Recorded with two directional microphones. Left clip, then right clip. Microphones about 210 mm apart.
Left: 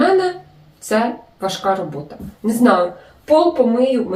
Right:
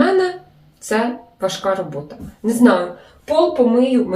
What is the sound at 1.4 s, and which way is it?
Speech, 5° right (ahead or behind).